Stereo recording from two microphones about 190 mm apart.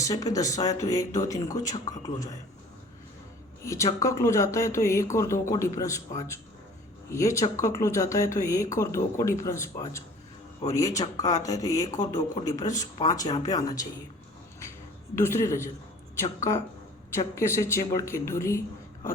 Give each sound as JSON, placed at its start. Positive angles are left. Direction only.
{"t": 0.0, "sound": "speech", "side_deg": 20}
{"t": 3.6, "sound": "speech", "side_deg": 15}
{"t": 15.1, "sound": "speech", "side_deg": 15}